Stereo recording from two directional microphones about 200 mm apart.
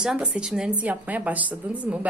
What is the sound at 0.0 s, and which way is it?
A woman's voice, 5° right (ahead or behind).